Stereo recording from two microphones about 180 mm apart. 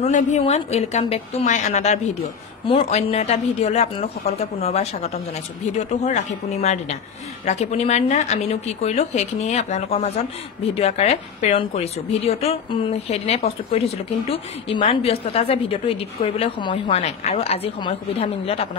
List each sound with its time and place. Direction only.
0.0 s a woman's voice: 40° left (ahead or behind)